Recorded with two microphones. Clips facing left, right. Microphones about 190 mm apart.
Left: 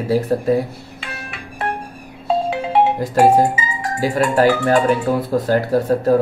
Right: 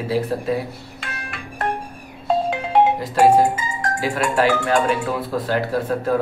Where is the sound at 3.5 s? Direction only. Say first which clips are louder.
Left 1 dB; 5° left (ahead or behind).